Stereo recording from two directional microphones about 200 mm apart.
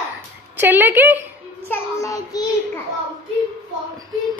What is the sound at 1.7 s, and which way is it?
A child's voice, 15° left (ahead or behind).